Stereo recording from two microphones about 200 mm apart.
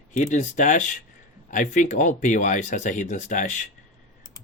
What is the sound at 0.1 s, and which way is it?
Speech, 40° left (ahead or behind).